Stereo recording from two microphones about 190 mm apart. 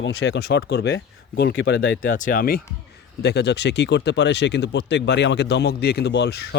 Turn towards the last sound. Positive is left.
turn(degrees=65)  # may be behind; listen again after turning